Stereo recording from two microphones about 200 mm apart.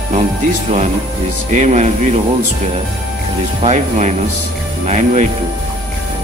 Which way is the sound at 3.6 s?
35° right (ahead or behind).